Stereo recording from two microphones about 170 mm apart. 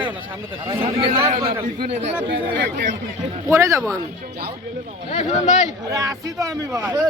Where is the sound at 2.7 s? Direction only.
50° right (ahead or behind).